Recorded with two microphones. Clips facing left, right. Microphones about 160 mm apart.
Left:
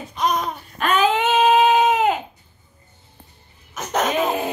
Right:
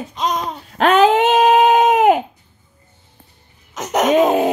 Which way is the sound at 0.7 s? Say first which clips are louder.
Right 8 dB; 80° right.